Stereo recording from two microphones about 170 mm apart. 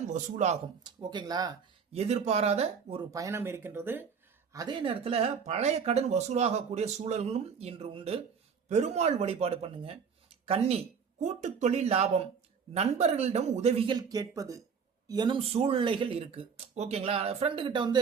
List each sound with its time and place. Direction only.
0.1 s speech: 45° right (ahead or behind)
0.9 s speech: 25° right (ahead or behind)
1.9 s speech: 40° right (ahead or behind)
3.1 s speech: 20° right (ahead or behind)
4.5 s speech: 25° right (ahead or behind)